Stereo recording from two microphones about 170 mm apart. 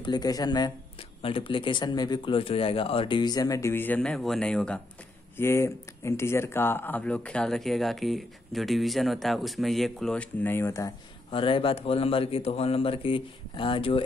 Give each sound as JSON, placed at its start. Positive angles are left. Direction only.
{"t": 0.0, "sound": "speech", "side_deg": 25}
{"t": 5.4, "sound": "speech", "side_deg": 15}
{"t": 11.2, "sound": "speech", "side_deg": 30}